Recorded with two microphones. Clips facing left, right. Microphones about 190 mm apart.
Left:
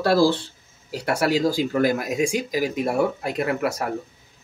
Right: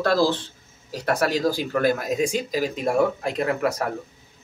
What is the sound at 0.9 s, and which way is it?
Speech, 10° left (ahead or behind).